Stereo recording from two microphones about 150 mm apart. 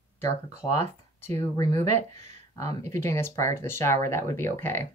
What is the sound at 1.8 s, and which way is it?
Speech, 50° right (ahead or behind).